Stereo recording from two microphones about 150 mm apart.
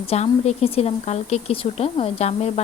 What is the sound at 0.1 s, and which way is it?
Speech, 45° left (ahead or behind).